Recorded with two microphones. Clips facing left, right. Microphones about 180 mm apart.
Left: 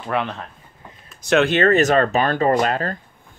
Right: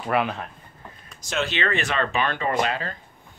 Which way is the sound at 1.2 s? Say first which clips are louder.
Left 10 dB; 60° left (ahead or behind).